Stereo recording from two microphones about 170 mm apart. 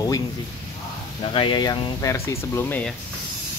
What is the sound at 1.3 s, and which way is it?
Speech, 30° left (ahead or behind).